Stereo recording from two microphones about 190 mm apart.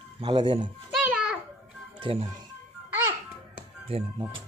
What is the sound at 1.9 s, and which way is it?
Speech, 30° right (ahead or behind).